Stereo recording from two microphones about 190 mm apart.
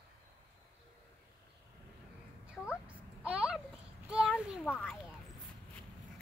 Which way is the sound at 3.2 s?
5° right (ahead or behind).